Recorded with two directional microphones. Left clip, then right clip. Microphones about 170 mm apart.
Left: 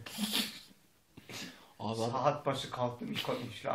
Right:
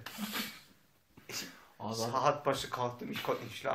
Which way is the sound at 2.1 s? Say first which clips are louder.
Right 3 dB; 25° right (ahead or behind).